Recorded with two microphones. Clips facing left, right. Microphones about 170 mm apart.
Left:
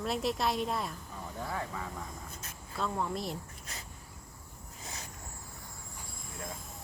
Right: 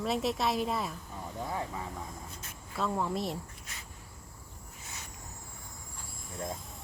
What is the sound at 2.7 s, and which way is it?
Speech, centre (ahead or behind).